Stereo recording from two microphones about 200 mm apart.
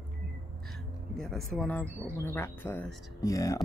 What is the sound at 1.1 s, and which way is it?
Speech, centre (ahead or behind).